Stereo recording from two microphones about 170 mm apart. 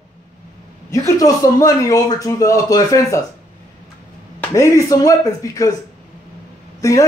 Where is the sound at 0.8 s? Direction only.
20° left (ahead or behind).